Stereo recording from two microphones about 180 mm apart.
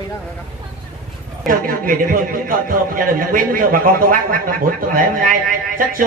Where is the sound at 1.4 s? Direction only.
50° right (ahead or behind).